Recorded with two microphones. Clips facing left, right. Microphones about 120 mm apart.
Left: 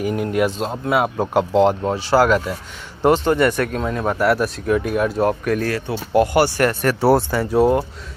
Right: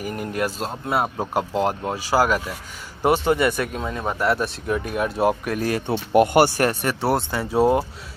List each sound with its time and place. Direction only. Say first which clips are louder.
0.0 s a man's voice: left 6 dB; centre (ahead or behind)
5.7 s speech: even; 20° right (ahead or behind)
6.8 s speech: left 6 dB; centre (ahead or behind)